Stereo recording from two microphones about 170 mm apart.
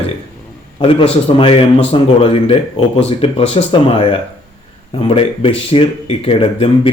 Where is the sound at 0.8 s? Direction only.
30° left (ahead or behind).